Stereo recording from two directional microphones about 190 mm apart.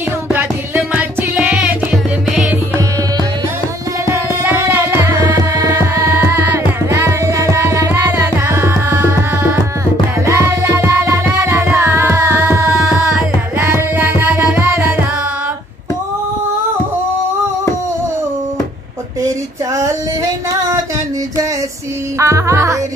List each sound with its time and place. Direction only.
0.3 s music: 10° right (ahead or behind)
4.0 s tabla: 15° right (ahead or behind)
10.2 s music: 15° right (ahead or behind)
13.6 s music: 15° right (ahead or behind)
19.2 s a sound: 15° right (ahead or behind)
22.2 s music: 15° right (ahead or behind)